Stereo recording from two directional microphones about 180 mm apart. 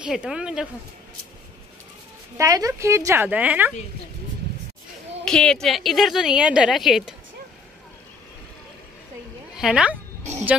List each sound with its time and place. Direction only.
0.0 s a woman's voice: 5° right (ahead or behind)
2.3 s a woman's voice: 20° right (ahead or behind)
5.2 s a woman's voice: 5° left (ahead or behind)
9.6 s speech: 5° right (ahead or behind)